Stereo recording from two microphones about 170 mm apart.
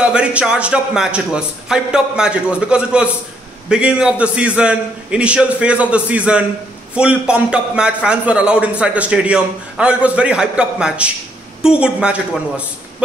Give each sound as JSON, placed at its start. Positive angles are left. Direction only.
{"t": 0.0, "sound": "a man's voice", "side_deg": -5}